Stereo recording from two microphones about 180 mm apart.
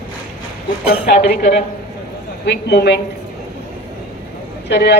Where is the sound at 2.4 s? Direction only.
70° left (ahead or behind).